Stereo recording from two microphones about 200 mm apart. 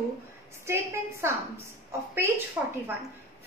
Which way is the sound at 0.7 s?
15° right (ahead or behind).